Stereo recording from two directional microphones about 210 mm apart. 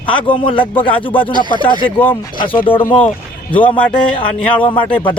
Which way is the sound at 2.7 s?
25° left (ahead or behind).